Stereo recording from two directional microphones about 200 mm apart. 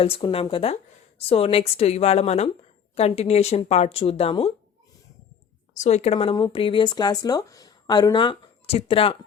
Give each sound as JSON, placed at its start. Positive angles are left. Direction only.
{"t": 0.0, "sound": "speech", "side_deg": 30}
{"t": 5.7, "sound": "speech", "side_deg": 35}